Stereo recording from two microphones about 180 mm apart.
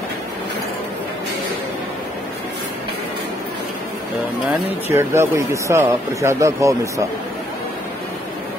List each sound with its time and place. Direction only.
4.9 s speech: 15° right (ahead or behind)